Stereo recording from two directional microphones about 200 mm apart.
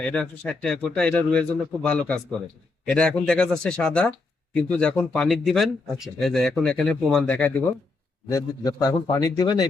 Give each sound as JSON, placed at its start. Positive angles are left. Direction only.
{"t": 0.0, "sound": "speech", "side_deg": 5}
{"t": 8.3, "sound": "a man's voice", "side_deg": 15}